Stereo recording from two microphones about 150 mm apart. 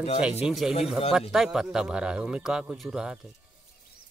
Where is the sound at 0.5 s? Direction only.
5° right (ahead or behind).